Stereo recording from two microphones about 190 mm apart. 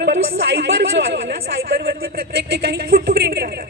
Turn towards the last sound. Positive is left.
turn(degrees=-55)  # may be behind; listen again after turning